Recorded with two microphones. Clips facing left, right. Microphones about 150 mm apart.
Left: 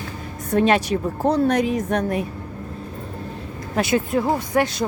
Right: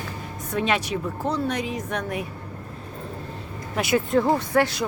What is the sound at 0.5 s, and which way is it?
Speech, 40° left (ahead or behind).